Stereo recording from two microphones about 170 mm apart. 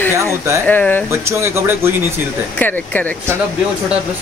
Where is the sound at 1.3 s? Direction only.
15° right (ahead or behind).